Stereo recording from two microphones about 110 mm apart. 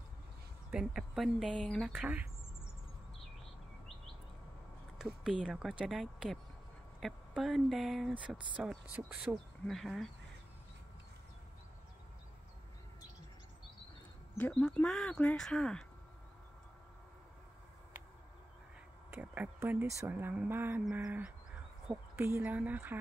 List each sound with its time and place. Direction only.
0.7 s speech: 5° right (ahead or behind)
1.9 s speech: 10° right (ahead or behind)
4.9 s a sound: 5° right (ahead or behind)
5.4 s speech: centre (ahead or behind)
14.3 s speech: 10° left (ahead or behind)
19.0 s a sound: 20° right (ahead or behind)
20.9 s speech: 10° right (ahead or behind)